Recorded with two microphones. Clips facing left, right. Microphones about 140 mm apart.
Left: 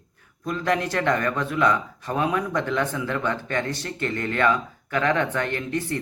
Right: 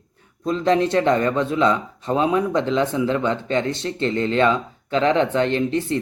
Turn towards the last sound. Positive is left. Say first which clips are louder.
# right 6 dB
turn(degrees=-25)  # may be behind; listen again after turning